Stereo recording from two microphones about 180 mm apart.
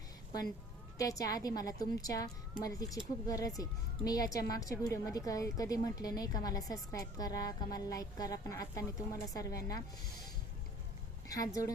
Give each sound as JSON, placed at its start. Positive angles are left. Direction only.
{"t": 0.9, "sound": "speech", "side_deg": 20}
{"t": 11.3, "sound": "speech", "side_deg": 20}